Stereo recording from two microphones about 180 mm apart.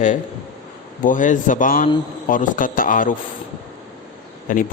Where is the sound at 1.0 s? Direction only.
45° left (ahead or behind).